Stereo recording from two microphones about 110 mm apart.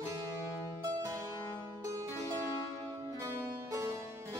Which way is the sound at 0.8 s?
35° right (ahead or behind).